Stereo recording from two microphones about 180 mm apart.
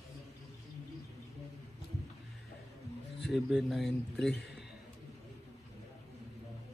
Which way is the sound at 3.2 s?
Centre (ahead or behind).